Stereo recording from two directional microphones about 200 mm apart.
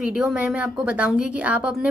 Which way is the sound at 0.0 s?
5° right (ahead or behind).